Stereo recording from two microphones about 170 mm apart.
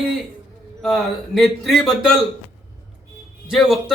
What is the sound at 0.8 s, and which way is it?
A man's voice, centre (ahead or behind).